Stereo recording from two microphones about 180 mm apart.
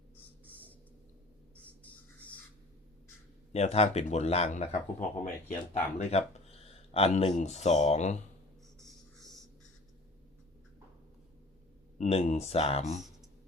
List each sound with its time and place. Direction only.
0.2 s a sound: 10° left (ahead or behind)
1.8 s bird: 10° left (ahead or behind)
3.5 s speech: 35° left (ahead or behind)
11.9 s speech: 40° left (ahead or behind)